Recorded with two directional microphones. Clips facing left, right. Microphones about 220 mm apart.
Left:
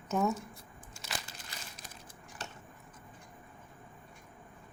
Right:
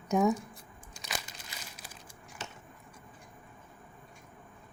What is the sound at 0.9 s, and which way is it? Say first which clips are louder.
Crumpling: right 2 dB; 15° right (ahead or behind).